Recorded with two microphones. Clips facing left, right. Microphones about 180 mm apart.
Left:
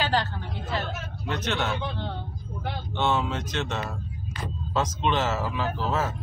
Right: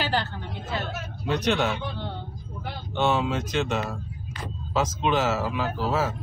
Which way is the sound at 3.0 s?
10° right (ahead or behind).